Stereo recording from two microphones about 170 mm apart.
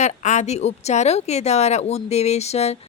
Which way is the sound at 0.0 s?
45° left (ahead or behind).